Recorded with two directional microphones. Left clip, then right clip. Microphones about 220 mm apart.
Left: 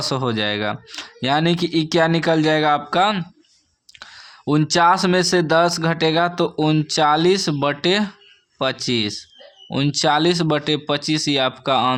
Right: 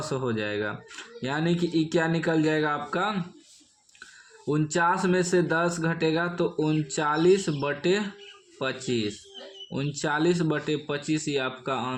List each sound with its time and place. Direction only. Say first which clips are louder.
0.0 s speech: left 8 dB; 40° left (ahead or behind)